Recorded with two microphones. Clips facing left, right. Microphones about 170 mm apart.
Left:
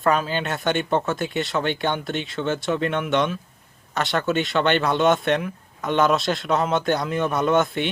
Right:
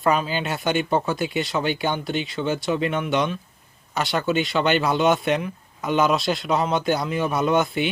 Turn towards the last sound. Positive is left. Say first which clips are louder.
# even
turn(degrees=0)  # may be behind; listen again after turning